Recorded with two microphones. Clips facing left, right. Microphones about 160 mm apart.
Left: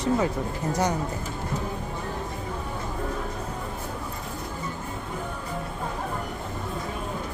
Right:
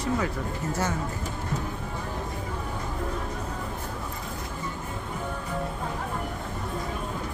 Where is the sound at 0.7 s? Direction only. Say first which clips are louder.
Left 4 dB; 15° left (ahead or behind).